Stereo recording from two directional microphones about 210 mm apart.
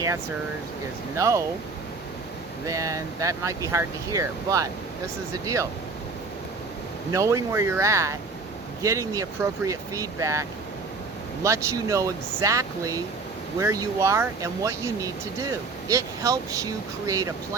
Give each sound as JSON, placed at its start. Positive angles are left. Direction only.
{"t": 1.1, "sound": "speech", "side_deg": -15}
{"t": 2.6, "sound": "speech", "side_deg": -15}
{"t": 7.1, "sound": "speech", "side_deg": -15}
{"t": 11.4, "sound": "speech", "side_deg": -15}